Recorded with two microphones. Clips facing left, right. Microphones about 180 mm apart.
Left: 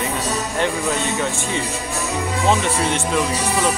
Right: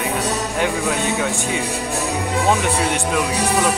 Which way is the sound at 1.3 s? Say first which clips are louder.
Right 2 dB; 15° right (ahead or behind).